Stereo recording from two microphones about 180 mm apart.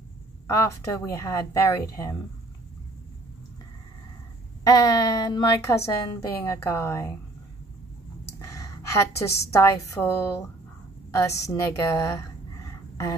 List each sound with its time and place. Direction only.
0.7 s speech: 15° left (ahead or behind)
4.6 s a woman's voice: 20° left (ahead or behind)
8.4 s a woman's voice: 15° left (ahead or behind)